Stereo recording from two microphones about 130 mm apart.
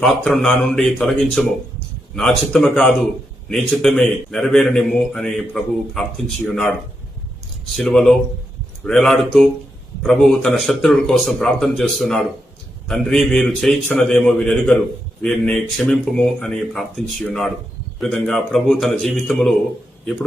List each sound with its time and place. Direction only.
0.3 s a man's voice: 5° left (ahead or behind)